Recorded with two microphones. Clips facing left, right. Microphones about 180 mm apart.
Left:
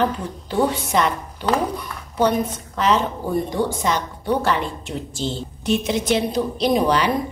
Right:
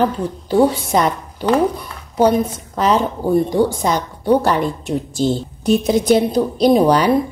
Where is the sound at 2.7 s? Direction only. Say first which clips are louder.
Right 3 dB; 40° right (ahead or behind).